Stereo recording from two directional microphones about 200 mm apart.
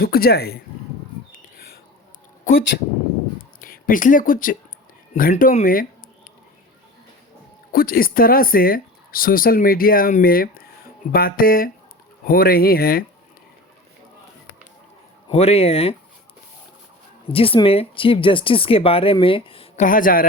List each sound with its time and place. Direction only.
0.0 s speech: 50° left (ahead or behind)
3.6 s speech: 45° left (ahead or behind)
7.7 s speech: 45° left (ahead or behind)
15.3 s speech: 30° left (ahead or behind)
17.2 s speech: 25° left (ahead or behind); by 20.2 s 45° left (ahead or behind)